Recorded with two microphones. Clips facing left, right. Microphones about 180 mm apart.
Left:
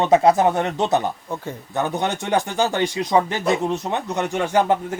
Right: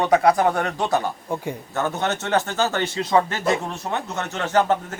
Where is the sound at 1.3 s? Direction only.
15° right (ahead or behind).